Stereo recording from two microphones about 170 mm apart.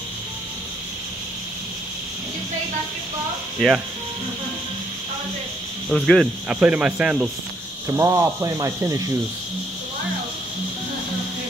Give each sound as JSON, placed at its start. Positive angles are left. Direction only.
{"t": 3.5, "sound": "speech", "side_deg": 0}
{"t": 5.9, "sound": "speech", "side_deg": 0}
{"t": 6.5, "sound": "speech", "side_deg": -10}
{"t": 7.9, "sound": "speech", "side_deg": -15}